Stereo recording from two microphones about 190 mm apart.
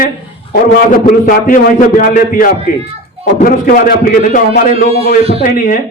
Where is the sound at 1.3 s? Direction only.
45° left (ahead or behind).